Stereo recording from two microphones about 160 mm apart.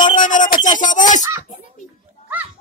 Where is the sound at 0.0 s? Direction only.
55° left (ahead or behind).